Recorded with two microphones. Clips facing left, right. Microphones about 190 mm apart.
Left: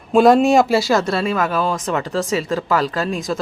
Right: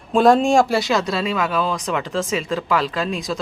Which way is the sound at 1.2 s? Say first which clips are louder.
Left 2 dB; 45° left (ahead or behind).